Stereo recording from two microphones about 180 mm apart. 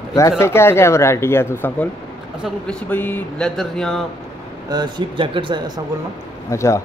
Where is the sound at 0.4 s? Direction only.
15° left (ahead or behind).